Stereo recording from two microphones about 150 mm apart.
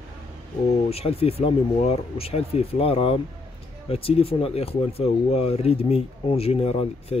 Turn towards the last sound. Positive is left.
turn(degrees=40)  # may be behind; listen again after turning